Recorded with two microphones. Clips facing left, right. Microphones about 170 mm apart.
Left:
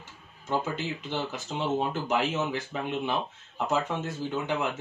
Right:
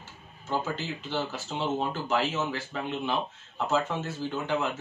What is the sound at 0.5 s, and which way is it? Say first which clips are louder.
Speech: left 1 dB; 15° left (ahead or behind).